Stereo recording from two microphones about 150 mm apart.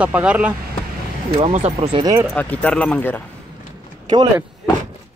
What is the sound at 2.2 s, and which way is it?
Speech, 10° left (ahead or behind).